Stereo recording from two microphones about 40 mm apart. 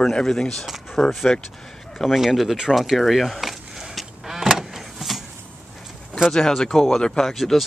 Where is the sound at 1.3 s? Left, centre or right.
Centre.